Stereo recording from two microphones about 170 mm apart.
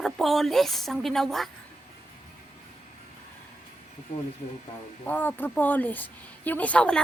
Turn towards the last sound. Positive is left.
turn(degrees=5)  # may be behind; listen again after turning